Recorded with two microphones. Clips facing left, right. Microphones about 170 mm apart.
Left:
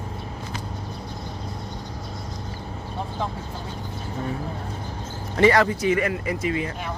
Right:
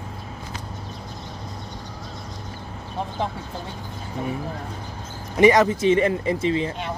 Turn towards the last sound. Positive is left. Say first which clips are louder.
# right 3 dB
turn(degrees=-25)  # may be behind; listen again after turning